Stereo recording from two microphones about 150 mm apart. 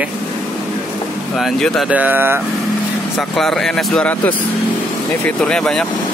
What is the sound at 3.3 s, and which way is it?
Speech, centre (ahead or behind).